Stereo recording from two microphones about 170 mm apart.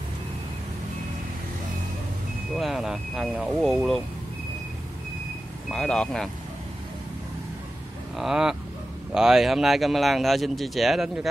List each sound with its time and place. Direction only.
2.5 s speech: centre (ahead or behind)
5.7 s speech: 5° left (ahead or behind)
8.2 s speech: 5° right (ahead or behind)